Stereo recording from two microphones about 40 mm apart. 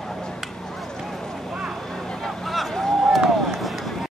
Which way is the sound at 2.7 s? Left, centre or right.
Centre.